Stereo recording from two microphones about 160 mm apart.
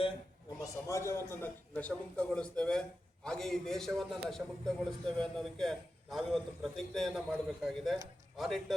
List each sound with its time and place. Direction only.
0.6 s a man's voice: 20° left (ahead or behind); by 8.7 s centre (ahead or behind)